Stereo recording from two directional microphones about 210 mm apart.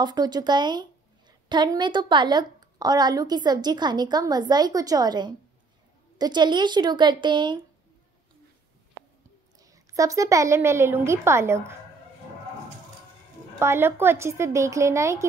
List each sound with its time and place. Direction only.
0.0 s a woman's voice: 20° right (ahead or behind)
9.6 s a woman's voice: 15° right (ahead or behind)
13.6 s a woman's voice: 10° right (ahead or behind)